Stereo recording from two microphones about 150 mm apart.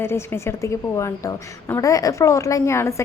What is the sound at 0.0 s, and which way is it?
A woman's voice, 15° left (ahead or behind).